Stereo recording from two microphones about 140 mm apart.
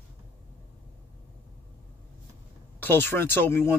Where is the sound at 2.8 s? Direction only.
15° left (ahead or behind).